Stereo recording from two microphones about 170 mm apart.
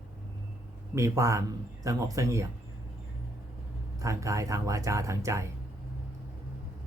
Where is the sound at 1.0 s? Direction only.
15° right (ahead or behind).